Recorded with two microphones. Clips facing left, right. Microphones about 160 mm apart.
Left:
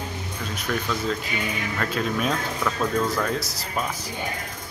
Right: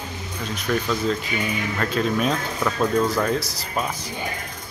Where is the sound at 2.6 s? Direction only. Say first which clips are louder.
Right 4 dB; 15° right (ahead or behind).